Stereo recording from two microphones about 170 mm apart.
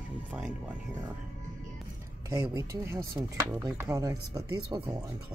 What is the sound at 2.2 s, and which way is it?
Speech, 20° right (ahead or behind).